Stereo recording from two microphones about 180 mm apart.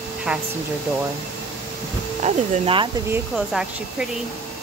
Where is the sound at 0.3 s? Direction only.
5° right (ahead or behind).